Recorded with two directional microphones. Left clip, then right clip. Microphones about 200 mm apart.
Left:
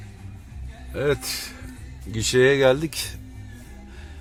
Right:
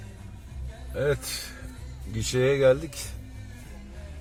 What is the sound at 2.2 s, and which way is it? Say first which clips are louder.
Speech: left 4 dB; 45° left (ahead or behind).